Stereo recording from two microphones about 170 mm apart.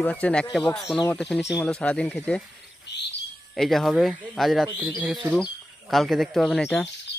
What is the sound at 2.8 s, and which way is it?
Bird, 90° left.